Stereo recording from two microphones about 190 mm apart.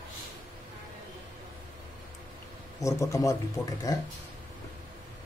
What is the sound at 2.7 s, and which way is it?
Speech, 15° left (ahead or behind).